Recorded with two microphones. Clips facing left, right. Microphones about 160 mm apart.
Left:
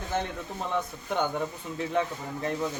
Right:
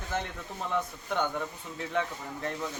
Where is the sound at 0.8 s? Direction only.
5° left (ahead or behind).